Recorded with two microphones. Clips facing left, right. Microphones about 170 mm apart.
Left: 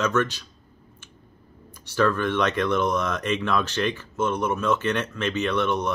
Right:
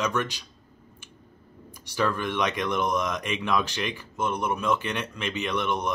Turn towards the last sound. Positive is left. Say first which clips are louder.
# left 3 dB
turn(degrees=-15)  # may be behind; listen again after turning